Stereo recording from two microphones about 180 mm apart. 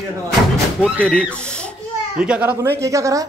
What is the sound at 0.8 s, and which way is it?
Speech, 5° left (ahead or behind).